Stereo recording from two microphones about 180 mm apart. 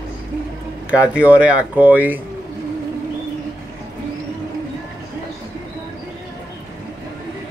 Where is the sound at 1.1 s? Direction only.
5° right (ahead or behind).